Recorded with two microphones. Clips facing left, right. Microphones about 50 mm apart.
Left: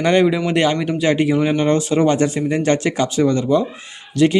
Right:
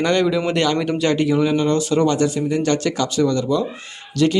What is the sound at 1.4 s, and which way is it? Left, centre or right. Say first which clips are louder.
Speech: left 1 dB; left.